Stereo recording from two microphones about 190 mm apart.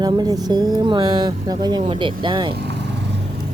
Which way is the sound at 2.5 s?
60° right (ahead or behind).